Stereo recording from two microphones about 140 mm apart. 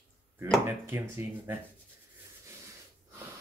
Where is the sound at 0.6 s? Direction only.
15° right (ahead or behind).